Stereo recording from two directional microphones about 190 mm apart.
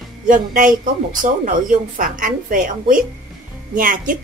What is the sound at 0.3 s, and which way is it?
A woman's voice, 45° right (ahead or behind).